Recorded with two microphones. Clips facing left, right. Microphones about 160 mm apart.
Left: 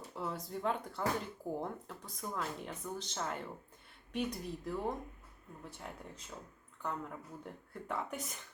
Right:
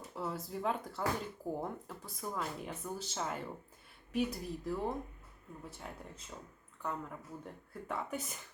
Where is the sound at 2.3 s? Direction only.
5° right (ahead or behind).